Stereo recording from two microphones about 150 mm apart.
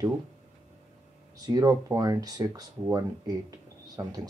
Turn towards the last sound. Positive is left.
turn(degrees=-25)  # may be behind; listen again after turning